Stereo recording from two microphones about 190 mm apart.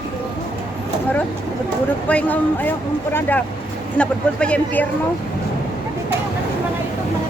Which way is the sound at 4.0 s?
5° left (ahead or behind).